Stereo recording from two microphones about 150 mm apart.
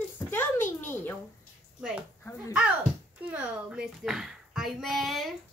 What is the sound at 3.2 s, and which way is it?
A child's voice, 10° right (ahead or behind).